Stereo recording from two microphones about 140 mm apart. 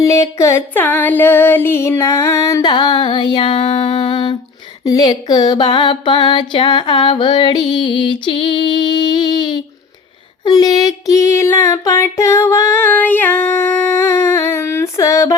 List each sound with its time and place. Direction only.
0.0 s female singing: 20° left (ahead or behind)
4.9 s a sound: 25° left (ahead or behind)
10.4 s female singing: 30° left (ahead or behind)